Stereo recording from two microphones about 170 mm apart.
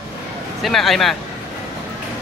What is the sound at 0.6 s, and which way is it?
Speech, centre (ahead or behind).